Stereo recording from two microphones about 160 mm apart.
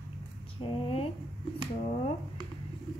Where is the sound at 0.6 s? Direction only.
35° left (ahead or behind).